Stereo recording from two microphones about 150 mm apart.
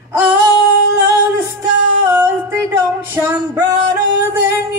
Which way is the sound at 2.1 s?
15° right (ahead or behind).